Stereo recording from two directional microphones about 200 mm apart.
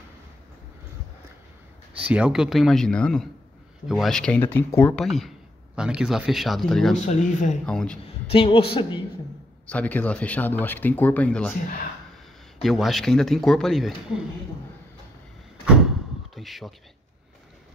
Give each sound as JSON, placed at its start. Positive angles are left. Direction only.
{"t": 2.0, "sound": "speech", "side_deg": -5}
{"t": 7.1, "sound": "speech", "side_deg": 35}
{"t": 7.6, "sound": "speech", "side_deg": 5}
{"t": 8.3, "sound": "a woman's voice", "side_deg": 30}
{"t": 9.7, "sound": "speech", "side_deg": 5}
{"t": 12.6, "sound": "speech", "side_deg": 0}
{"t": 15.6, "sound": "door", "side_deg": -5}
{"t": 16.3, "sound": "speech", "side_deg": 0}